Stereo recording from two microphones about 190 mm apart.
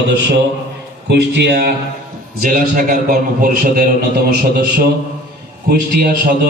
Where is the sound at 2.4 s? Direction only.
45° right (ahead or behind).